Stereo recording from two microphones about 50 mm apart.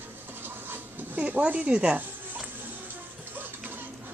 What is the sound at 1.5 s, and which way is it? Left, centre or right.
Speech, right.